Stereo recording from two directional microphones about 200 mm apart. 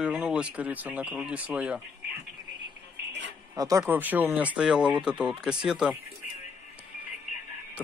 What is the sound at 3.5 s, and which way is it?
Speech, 15° right (ahead or behind).